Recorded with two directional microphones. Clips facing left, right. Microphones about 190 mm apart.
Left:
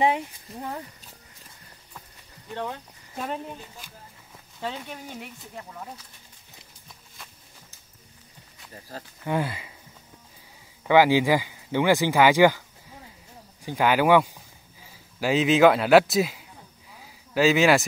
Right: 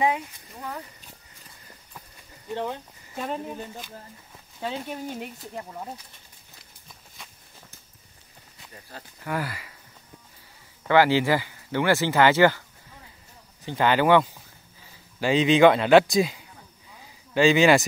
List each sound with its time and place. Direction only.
2.5 s speech: 20° right (ahead or behind)
3.2 s speech: centre (ahead or behind)
9.2 s speech: 25° left (ahead or behind)
10.9 s speech: 15° left (ahead or behind)
13.7 s speech: 10° left (ahead or behind)